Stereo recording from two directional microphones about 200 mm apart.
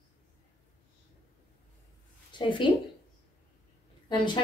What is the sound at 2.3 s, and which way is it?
Speech, 25° left (ahead or behind).